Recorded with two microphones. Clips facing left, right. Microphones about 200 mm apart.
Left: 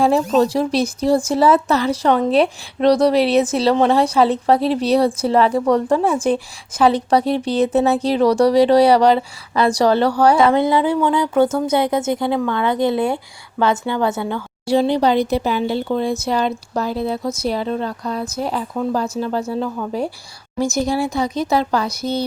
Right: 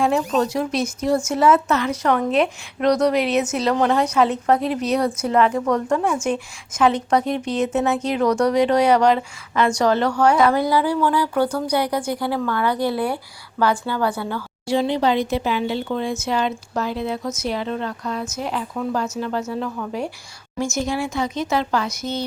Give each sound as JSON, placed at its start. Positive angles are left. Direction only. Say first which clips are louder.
{"t": 0.0, "sound": "a woman's voice", "louder": "left 4 dB", "side_deg": 35}
{"t": 14.7, "sound": "speech", "louder": "left 4 dB", "side_deg": 35}